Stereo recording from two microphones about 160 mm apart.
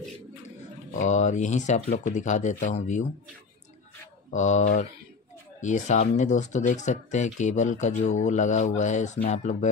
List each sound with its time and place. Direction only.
0.9 s speech: 50° left (ahead or behind)
4.3 s speech: 50° left (ahead or behind)